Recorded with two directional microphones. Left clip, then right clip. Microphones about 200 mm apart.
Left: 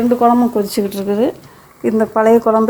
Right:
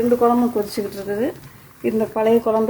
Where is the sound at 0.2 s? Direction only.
40° left (ahead or behind).